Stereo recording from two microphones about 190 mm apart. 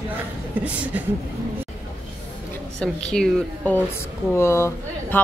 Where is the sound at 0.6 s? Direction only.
5° right (ahead or behind).